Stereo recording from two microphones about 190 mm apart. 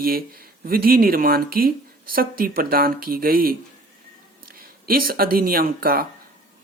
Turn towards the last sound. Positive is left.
turn(degrees=-50)  # may be behind; listen again after turning